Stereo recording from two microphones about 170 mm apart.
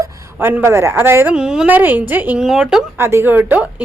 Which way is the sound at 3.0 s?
15° right (ahead or behind).